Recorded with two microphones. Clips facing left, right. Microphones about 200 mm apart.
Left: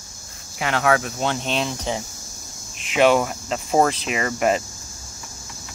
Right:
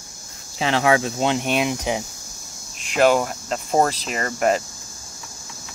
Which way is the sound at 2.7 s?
Centre (ahead or behind).